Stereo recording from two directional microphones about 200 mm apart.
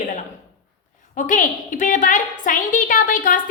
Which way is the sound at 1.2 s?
40° left (ahead or behind).